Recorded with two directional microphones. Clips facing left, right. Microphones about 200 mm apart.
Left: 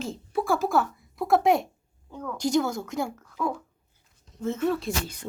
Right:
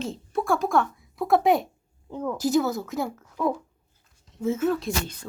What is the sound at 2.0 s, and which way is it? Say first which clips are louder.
Speech: right 6 dB; 25° right (ahead or behind).